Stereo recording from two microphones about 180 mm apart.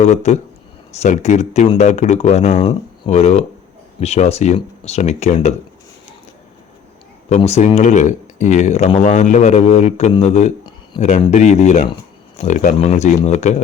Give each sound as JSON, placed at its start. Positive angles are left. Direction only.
{"t": 0.0, "sound": "speech", "side_deg": 40}
{"t": 7.3, "sound": "speech", "side_deg": 40}